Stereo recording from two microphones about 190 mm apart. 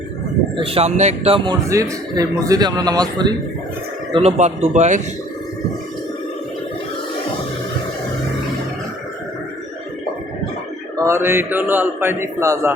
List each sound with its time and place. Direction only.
0.5 s speech: 30° right (ahead or behind)
1.7 s a man's voice: 20° right (ahead or behind)
4.1 s speech: 35° right (ahead or behind)
10.9 s a man's voice: 15° right (ahead or behind)